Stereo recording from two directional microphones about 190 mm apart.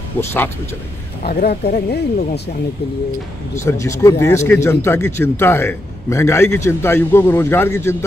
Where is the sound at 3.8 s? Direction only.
15° left (ahead or behind).